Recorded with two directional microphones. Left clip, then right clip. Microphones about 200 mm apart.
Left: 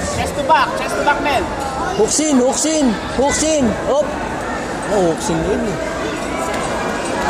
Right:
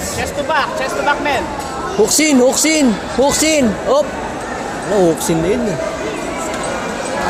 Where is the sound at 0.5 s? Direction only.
5° right (ahead or behind).